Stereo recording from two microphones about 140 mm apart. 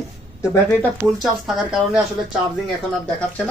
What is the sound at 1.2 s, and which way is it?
Speech, centre (ahead or behind).